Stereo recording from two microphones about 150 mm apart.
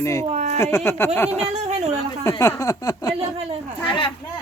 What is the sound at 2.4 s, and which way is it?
A child's voice, 20° left (ahead or behind).